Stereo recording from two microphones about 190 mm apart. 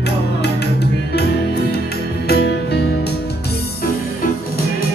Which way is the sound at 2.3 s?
60° left (ahead or behind).